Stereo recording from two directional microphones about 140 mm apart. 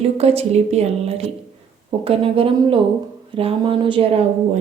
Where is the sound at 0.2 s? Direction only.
45° right (ahead or behind).